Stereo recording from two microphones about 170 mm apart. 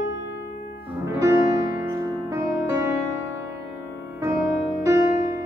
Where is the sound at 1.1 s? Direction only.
15° right (ahead or behind).